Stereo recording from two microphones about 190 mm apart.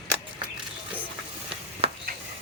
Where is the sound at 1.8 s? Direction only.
30° right (ahead or behind).